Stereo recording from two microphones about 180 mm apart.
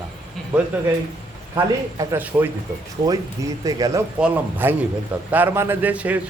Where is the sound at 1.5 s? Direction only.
10° right (ahead or behind).